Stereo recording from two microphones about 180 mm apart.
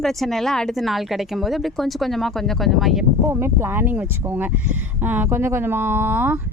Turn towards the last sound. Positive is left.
turn(degrees=-10)  # may be behind; listen again after turning